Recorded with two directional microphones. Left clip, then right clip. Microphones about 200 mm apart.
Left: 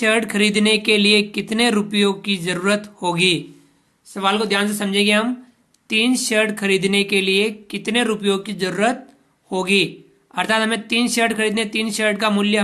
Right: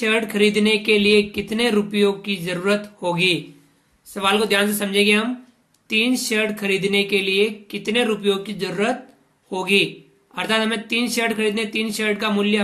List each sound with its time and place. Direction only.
0.0 s speech: 35° left (ahead or behind)
4.1 s speech: 25° left (ahead or behind)